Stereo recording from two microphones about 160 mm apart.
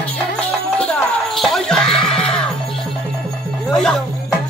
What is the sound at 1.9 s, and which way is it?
Music, 35° left (ahead or behind).